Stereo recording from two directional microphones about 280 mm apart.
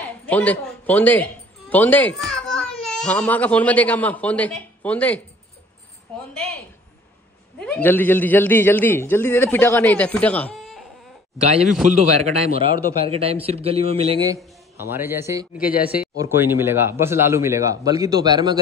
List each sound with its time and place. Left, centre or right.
0.3 s speech: centre
7.5 s a man's voice: centre
11.3 s speech: right
14.8 s speech: centre
15.6 s speech: left
15.9 s speech: centre